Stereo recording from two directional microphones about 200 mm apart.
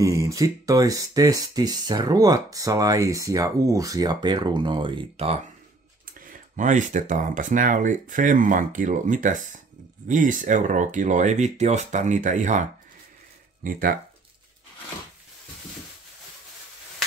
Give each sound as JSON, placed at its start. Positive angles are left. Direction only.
{"t": 0.0, "sound": "speech", "side_deg": -15}
{"t": 6.1, "sound": "speech", "side_deg": -40}
{"t": 13.7, "sound": "speech", "side_deg": -45}